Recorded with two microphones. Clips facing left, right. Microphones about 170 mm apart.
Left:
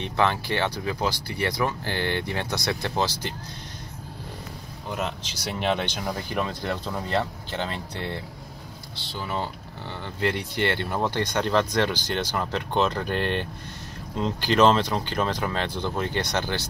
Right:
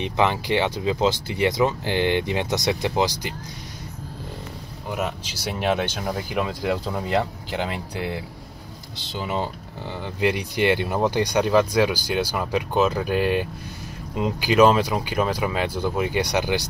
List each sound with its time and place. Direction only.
0.0 s speech: 15° right (ahead or behind)
4.8 s speech: 5° right (ahead or behind)